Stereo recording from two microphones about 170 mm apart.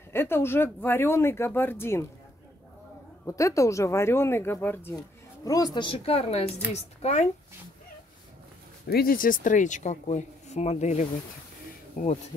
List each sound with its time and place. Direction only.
0.1 s speech: 15° left (ahead or behind)
3.3 s speech: 20° left (ahead or behind); by 7.2 s 40° left (ahead or behind)
8.8 s speech: 60° left (ahead or behind)